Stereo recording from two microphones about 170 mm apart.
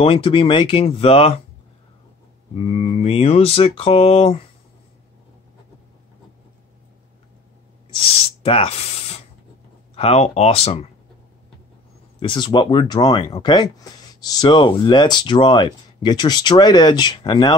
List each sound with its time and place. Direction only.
0.0 s speech: 30° left (ahead or behind)
2.5 s speech: 35° left (ahead or behind)
8.5 s speech: 40° left (ahead or behind)
12.2 s speech: 25° left (ahead or behind)